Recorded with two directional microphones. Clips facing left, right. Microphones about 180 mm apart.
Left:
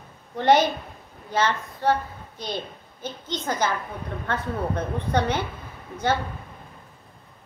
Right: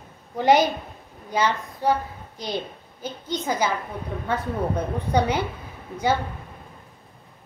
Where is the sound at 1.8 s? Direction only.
10° right (ahead or behind).